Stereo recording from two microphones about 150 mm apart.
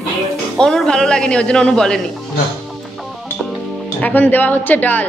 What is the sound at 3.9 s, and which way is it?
A woman's voice, 10° left (ahead or behind).